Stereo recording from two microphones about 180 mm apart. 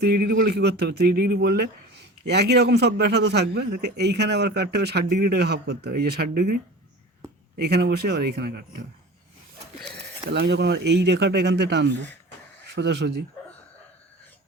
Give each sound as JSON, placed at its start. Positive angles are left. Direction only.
{"t": 0.0, "sound": "a man's voice", "side_deg": -55}
{"t": 7.6, "sound": "a man's voice", "side_deg": -65}
{"t": 10.2, "sound": "speech", "side_deg": -65}